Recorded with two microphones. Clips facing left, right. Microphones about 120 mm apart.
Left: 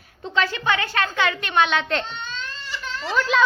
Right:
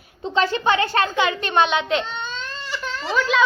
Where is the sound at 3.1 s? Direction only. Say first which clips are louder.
Right 1 dB; centre (ahead or behind).